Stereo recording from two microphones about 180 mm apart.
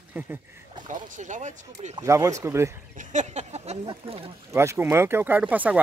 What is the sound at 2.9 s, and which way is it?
Speech, 40° right (ahead or behind).